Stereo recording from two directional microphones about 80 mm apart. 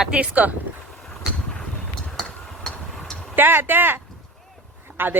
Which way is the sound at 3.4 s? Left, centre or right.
Right.